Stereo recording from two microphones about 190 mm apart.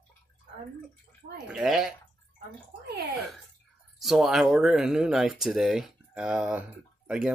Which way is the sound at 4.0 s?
Centre (ahead or behind).